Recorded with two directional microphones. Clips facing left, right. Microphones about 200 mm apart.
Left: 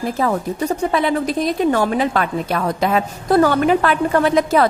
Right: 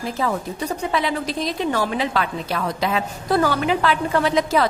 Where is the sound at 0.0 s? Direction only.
50° left (ahead or behind).